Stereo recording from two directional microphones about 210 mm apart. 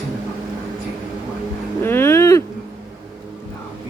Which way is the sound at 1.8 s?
10° left (ahead or behind).